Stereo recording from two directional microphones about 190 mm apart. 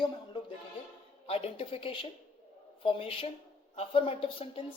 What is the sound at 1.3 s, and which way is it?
A woman's voice, 30° left (ahead or behind).